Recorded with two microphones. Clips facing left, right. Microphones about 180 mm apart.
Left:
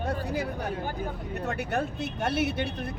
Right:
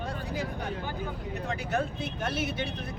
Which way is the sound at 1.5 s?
60° left (ahead or behind).